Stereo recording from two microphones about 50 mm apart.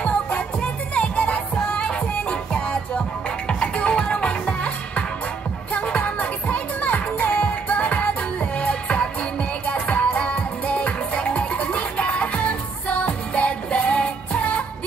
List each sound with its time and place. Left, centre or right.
0.0 s music: left
3.4 s music: left